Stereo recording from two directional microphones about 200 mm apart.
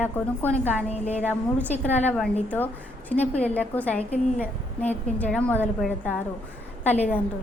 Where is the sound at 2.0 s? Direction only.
5° left (ahead or behind).